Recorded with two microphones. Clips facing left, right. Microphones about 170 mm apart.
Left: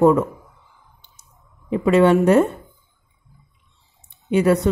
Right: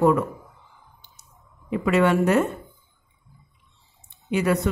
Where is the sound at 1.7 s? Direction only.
30° left (ahead or behind).